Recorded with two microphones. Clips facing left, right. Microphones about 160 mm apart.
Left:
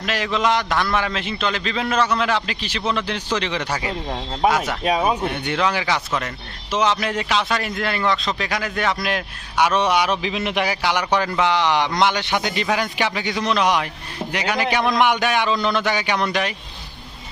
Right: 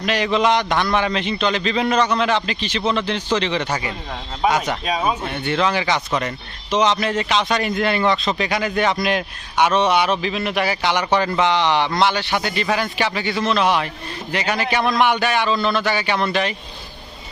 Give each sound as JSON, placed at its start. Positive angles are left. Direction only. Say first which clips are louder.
{"t": 0.0, "sound": "a man's voice", "louder": "right 3 dB", "side_deg": 0}
{"t": 4.8, "sound": "speech", "louder": "left 2 dB", "side_deg": 55}
{"t": 5.3, "sound": "speech", "louder": "right 2 dB", "side_deg": 15}